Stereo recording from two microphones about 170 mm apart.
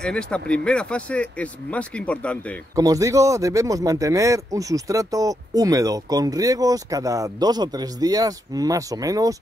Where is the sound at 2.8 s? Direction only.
20° right (ahead or behind).